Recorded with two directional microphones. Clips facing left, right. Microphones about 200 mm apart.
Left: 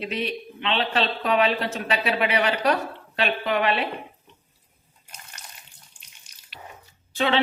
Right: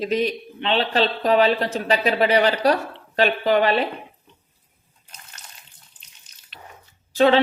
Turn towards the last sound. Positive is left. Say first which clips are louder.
# right 7 dB
turn(degrees=-40)  # may be behind; listen again after turning